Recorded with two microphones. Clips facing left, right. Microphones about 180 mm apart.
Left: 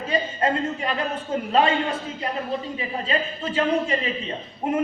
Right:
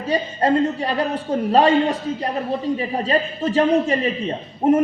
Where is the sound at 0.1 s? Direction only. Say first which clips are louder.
Right 5 dB; 35° right (ahead or behind).